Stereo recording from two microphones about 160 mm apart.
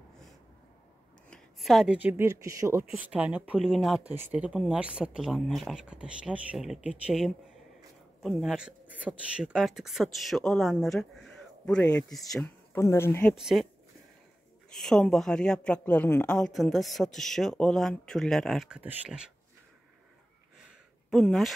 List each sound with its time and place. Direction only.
1.3 s a woman's voice: centre (ahead or behind); by 2.9 s 20° right (ahead or behind)
2.9 s speech: 10° right (ahead or behind)
12.7 s speech: 15° left (ahead or behind)
13.3 s speech: centre (ahead or behind)
14.7 s speech: 5° left (ahead or behind)
21.1 s speech: centre (ahead or behind)